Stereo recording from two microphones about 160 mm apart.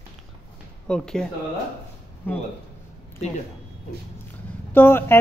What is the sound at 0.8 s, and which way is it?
Speech, 5° left (ahead or behind).